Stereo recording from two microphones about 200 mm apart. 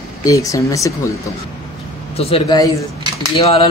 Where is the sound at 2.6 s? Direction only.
15° left (ahead or behind).